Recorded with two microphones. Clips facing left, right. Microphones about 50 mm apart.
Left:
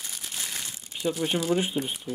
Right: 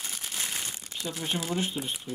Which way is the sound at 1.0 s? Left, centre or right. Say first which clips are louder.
Left 7 dB; left.